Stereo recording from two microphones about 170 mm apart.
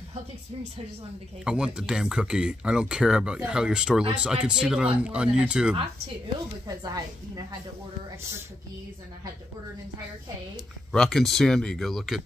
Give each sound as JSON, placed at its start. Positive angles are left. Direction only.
{"t": 1.4, "sound": "speech", "side_deg": -5}
{"t": 6.8, "sound": "a woman's voice", "side_deg": -25}
{"t": 10.9, "sound": "speech", "side_deg": 5}